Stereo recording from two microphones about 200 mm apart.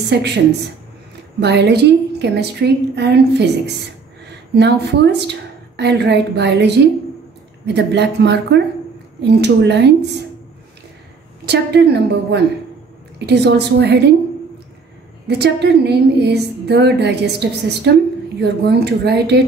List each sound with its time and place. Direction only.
0.1 s a woman's voice: 55° right (ahead or behind)
1.4 s a woman's voice: 55° right (ahead or behind)
11.4 s a woman's voice: 55° right (ahead or behind)
15.2 s a woman's voice: 55° right (ahead or behind)